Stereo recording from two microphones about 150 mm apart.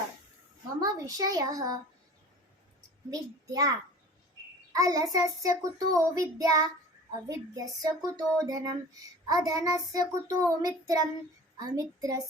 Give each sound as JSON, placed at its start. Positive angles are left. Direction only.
{"t": 0.8, "sound": "a child's voice", "side_deg": -25}
{"t": 3.1, "sound": "a child's voice", "side_deg": -25}